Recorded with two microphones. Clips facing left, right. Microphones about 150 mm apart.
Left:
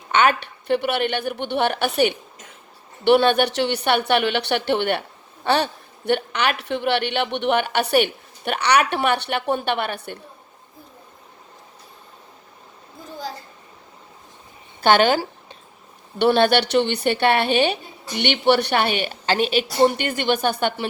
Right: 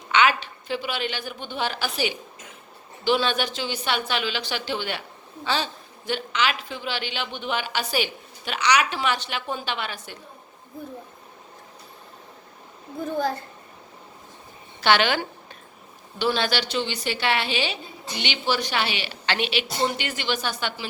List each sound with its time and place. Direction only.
0.1 s a woman's voice: 50° left (ahead or behind)
13.1 s a woman's voice: 55° right (ahead or behind)
14.8 s speech: 45° left (ahead or behind)
16.1 s a woman's voice: 60° left (ahead or behind)